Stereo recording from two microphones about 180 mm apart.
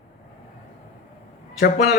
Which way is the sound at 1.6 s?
55° left (ahead or behind).